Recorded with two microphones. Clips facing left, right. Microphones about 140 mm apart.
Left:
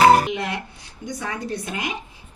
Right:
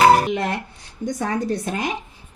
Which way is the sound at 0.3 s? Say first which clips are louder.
Right 3 dB; 45° right (ahead or behind).